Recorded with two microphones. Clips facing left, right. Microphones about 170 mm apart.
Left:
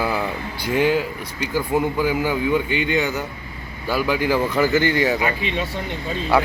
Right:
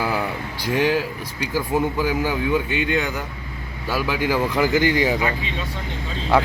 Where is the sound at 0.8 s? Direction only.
90° right.